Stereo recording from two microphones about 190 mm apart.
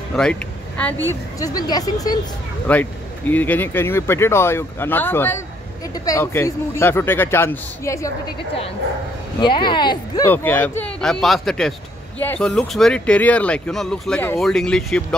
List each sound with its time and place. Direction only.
0.1 s speech: 5° left (ahead or behind)
1.4 s speech: 20° left (ahead or behind)
2.7 s speech: 10° left (ahead or behind)
9.4 s speech: 25° left (ahead or behind)
10.3 s speech: 10° left (ahead or behind)